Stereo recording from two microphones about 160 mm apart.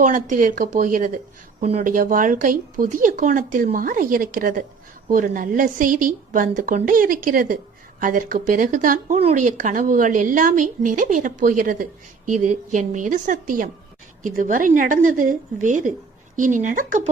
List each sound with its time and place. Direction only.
0.0 s a woman's voice: 55° right (ahead or behind)
1.6 s a woman's voice: 40° right (ahead or behind)
1.9 s a woman's voice: 60° right (ahead or behind)
9.1 s a woman's voice: 45° right (ahead or behind)